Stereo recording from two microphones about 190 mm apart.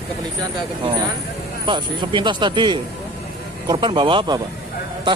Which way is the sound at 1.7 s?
25° right (ahead or behind).